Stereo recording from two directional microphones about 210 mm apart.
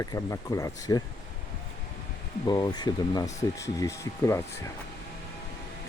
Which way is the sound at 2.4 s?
20° left (ahead or behind).